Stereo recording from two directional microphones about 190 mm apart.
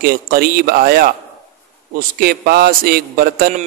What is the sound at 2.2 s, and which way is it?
A man's voice, 55° right (ahead or behind).